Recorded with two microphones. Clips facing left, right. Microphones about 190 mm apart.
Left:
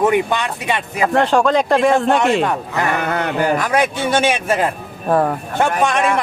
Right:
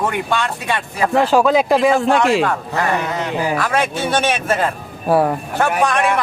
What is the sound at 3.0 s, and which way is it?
Speech, 60° left (ahead or behind).